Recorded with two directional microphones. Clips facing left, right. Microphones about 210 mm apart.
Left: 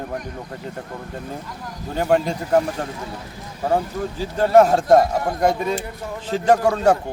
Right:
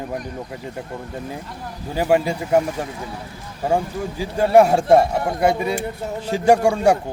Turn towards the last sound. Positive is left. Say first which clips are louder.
# right 1 dB
turn(degrees=-10)  # may be behind; listen again after turning